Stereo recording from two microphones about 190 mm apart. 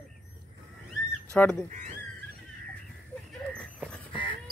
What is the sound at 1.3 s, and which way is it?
Speech, 5° left (ahead or behind).